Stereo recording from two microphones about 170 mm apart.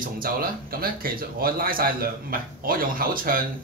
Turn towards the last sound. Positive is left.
turn(degrees=-55)  # may be behind; listen again after turning